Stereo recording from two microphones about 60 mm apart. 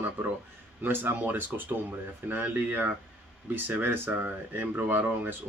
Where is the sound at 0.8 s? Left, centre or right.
Right.